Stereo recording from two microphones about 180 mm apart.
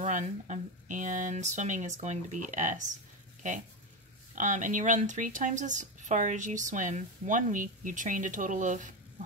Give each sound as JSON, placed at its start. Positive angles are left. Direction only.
{"t": 0.0, "sound": "speech", "side_deg": -40}
{"t": 4.4, "sound": "speech", "side_deg": -45}